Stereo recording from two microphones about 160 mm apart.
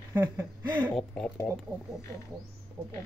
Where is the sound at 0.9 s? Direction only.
5° left (ahead or behind).